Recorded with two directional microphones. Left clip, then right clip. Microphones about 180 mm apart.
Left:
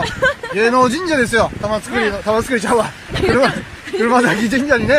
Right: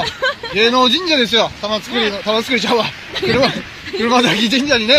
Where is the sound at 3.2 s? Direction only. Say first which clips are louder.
Left 2 dB; 45° left (ahead or behind).